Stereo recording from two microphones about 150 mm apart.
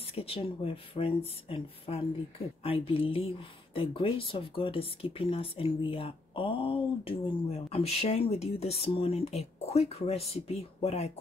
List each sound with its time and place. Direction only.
0.0 s speech: 40° left (ahead or behind)